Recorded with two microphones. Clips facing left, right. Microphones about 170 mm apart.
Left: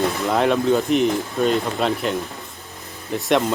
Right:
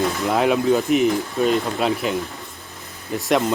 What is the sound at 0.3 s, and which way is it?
A man's voice, 5° right (ahead or behind).